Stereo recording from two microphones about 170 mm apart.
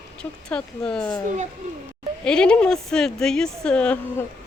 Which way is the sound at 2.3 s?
5° left (ahead or behind).